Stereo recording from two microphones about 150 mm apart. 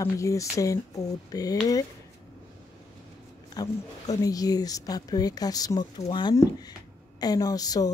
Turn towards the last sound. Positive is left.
turn(degrees=25)  # may be behind; listen again after turning